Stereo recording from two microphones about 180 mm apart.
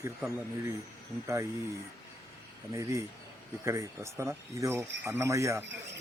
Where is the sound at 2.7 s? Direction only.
15° right (ahead or behind).